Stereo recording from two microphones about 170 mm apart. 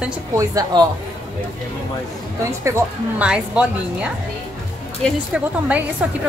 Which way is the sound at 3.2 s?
5° right (ahead or behind).